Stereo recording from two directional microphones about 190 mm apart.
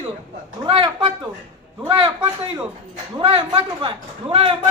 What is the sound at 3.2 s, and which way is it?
Speech, 30° right (ahead or behind).